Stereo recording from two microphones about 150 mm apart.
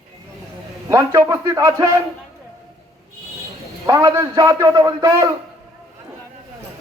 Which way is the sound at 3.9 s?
20° right (ahead or behind).